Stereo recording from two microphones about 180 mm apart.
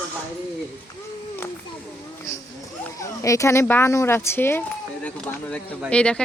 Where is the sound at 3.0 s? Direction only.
15° left (ahead or behind).